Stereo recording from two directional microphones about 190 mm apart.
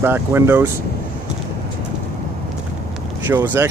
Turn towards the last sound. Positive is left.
turn(degrees=-10)  # may be behind; listen again after turning